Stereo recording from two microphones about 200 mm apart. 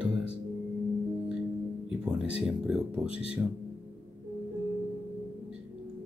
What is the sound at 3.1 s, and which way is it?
Speech, 30° left (ahead or behind).